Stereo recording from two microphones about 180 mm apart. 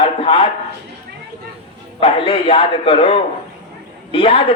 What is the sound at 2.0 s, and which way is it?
A man's voice, 30° left (ahead or behind).